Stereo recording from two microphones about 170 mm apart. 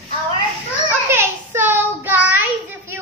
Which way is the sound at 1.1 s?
15° right (ahead or behind).